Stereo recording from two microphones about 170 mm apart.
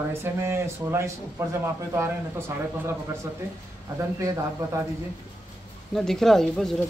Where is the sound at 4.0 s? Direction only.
15° right (ahead or behind).